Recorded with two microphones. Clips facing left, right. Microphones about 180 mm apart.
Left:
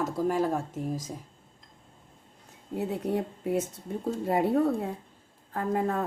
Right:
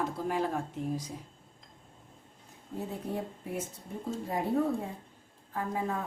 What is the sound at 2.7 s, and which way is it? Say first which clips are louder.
Speech: left 6 dB; 70° left (ahead or behind).